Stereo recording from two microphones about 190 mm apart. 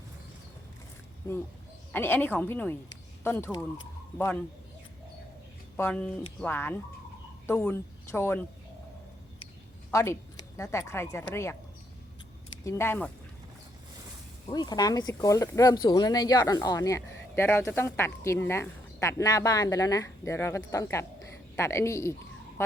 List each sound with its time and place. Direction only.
1.9 s speech: 10° left (ahead or behind)
5.7 s speech: 10° left (ahead or behind)
9.9 s speech: 15° left (ahead or behind)
12.6 s speech: 15° left (ahead or behind)
14.5 s speech: 20° left (ahead or behind)